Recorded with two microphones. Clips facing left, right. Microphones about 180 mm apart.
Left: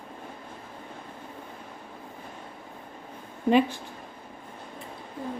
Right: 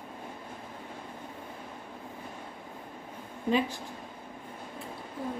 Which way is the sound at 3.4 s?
65° left (ahead or behind).